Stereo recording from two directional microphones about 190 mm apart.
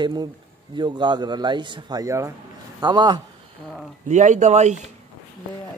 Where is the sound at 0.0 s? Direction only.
20° right (ahead or behind).